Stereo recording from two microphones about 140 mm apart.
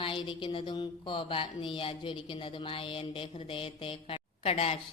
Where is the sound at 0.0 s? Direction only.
40° left (ahead or behind).